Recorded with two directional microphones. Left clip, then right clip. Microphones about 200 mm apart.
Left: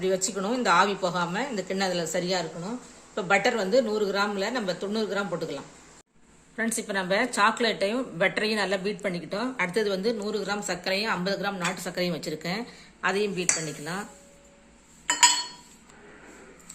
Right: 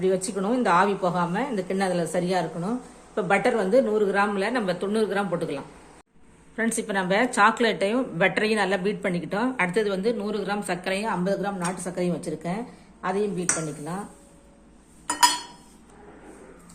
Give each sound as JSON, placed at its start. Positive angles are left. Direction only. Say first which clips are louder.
{"t": 0.0, "sound": "a woman's voice", "louder": "right 2 dB", "side_deg": 0}
{"t": 9.7, "sound": "a woman's voice", "louder": "right 2 dB", "side_deg": 20}